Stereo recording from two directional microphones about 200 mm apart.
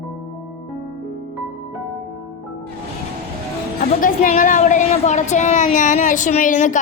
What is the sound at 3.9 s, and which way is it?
A woman's voice, 40° left (ahead or behind).